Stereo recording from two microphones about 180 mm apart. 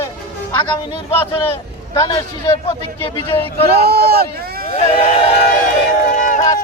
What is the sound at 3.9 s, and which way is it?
Speech, 60° right (ahead or behind).